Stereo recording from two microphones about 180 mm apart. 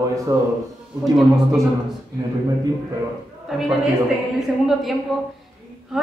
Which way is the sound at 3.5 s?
Centre (ahead or behind).